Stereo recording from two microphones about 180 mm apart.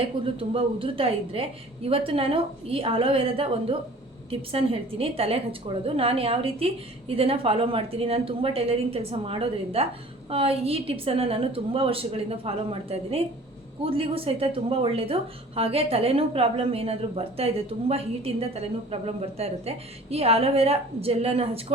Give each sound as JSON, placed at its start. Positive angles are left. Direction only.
{"t": 0.0, "sound": "a woman's voice", "side_deg": -30}